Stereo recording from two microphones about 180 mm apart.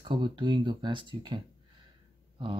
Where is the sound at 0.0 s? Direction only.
25° right (ahead or behind).